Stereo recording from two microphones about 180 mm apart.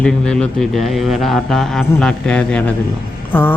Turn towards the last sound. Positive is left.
turn(degrees=10)  # may be behind; listen again after turning